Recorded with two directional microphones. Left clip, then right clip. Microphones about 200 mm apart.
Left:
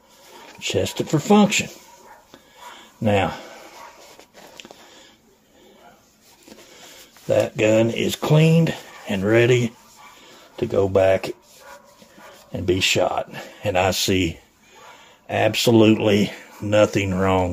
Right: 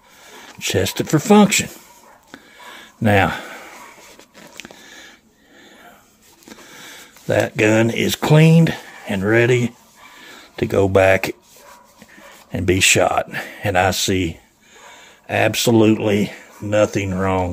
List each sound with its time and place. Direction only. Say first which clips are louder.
0.6 s speech: right 3 dB; 30° right (ahead or behind)
3.0 s speech: right 4 dB; 30° right (ahead or behind)
4.6 s a sound: right 5 dB; 25° right (ahead or behind)
7.2 s speech: right 2 dB; 25° right (ahead or behind); by 9.8 s 10° right (ahead or behind)
10.5 s speech: right 3 dB; 35° right (ahead or behind)
12.5 s speech: right 4 dB; 35° right (ahead or behind)
13.8 s speech: right 2 dB; 10° right (ahead or behind)